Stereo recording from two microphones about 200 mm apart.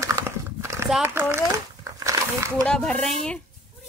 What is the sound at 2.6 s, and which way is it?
Speech, 5° left (ahead or behind).